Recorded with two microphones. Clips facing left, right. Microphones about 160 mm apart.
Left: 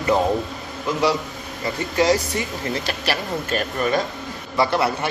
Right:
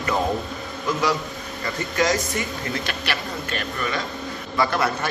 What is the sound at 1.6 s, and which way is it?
A man's voice, 30° left (ahead or behind).